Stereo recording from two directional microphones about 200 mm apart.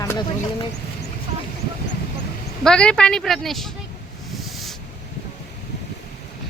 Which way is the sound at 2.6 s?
5° left (ahead or behind).